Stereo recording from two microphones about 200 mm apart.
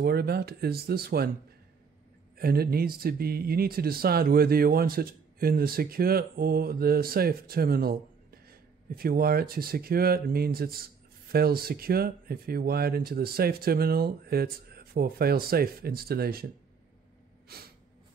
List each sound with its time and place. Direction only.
0.0 s speech: 55° right (ahead or behind)
2.3 s speech: 50° right (ahead or behind)
17.5 s speech: 50° right (ahead or behind)